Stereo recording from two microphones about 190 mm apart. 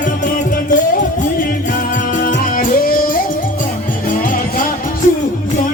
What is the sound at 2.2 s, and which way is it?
Music, 50° left (ahead or behind).